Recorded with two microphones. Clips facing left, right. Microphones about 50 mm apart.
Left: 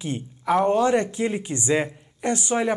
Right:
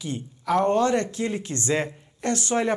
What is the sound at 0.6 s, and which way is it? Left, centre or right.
Speech, centre.